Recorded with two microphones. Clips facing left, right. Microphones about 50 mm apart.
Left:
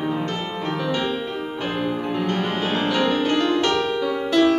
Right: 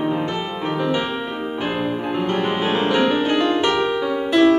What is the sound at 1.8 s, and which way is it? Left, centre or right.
Music, centre.